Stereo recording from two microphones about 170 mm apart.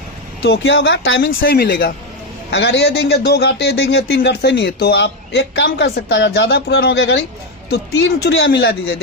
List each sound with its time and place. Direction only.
0.4 s a man's voice: 80° left
1.4 s speech: 80° left
2.5 s a man's voice: 90° left